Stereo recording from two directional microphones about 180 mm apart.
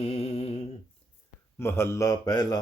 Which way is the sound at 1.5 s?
15° left (ahead or behind).